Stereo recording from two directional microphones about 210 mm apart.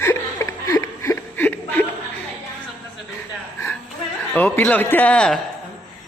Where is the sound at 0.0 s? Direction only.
15° left (ahead or behind).